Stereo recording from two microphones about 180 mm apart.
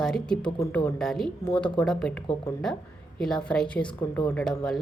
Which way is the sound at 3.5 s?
5° left (ahead or behind).